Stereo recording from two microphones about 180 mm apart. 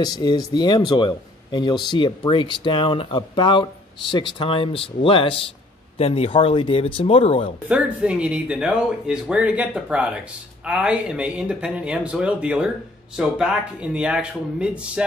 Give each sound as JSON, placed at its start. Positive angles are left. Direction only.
{"t": 0.0, "sound": "speech", "side_deg": 25}
{"t": 7.6, "sound": "speech", "side_deg": -5}